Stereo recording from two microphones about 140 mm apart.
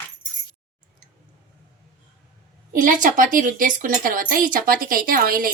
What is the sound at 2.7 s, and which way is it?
A woman's voice, 75° right (ahead or behind).